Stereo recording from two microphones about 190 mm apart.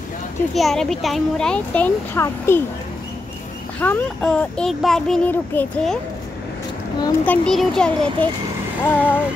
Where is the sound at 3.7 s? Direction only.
10° left (ahead or behind).